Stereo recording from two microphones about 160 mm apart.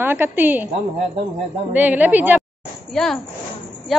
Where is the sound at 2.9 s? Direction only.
5° left (ahead or behind).